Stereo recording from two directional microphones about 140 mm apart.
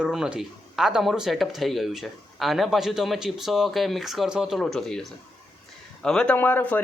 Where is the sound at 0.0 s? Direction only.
5° right (ahead or behind).